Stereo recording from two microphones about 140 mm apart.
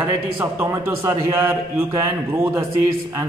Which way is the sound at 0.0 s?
20° right (ahead or behind).